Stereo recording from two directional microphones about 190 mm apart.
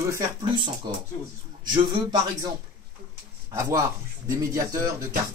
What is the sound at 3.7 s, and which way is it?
Speech, 15° right (ahead or behind).